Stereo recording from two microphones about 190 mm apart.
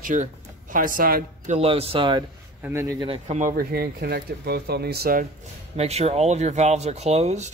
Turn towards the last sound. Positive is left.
turn(degrees=-35)  # may be behind; listen again after turning